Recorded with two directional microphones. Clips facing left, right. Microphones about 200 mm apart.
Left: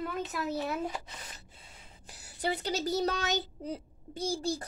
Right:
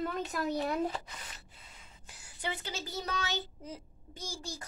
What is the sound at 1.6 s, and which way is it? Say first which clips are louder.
A woman's voice: left 2 dB; 35° left (ahead or behind).